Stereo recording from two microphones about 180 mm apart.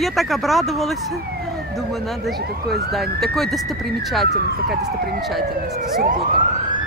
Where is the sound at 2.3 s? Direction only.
Centre (ahead or behind).